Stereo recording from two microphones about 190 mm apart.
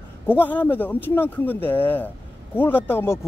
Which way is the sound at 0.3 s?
10° left (ahead or behind).